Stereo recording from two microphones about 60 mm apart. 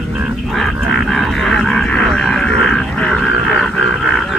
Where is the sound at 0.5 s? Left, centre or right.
Centre.